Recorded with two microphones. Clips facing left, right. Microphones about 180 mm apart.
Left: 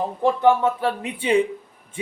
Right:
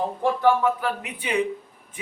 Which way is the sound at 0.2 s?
25° left (ahead or behind).